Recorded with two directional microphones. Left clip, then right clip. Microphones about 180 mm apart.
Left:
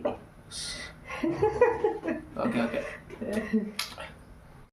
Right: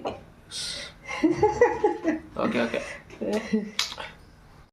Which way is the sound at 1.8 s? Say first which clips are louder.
Right 4 dB; 65° right (ahead or behind).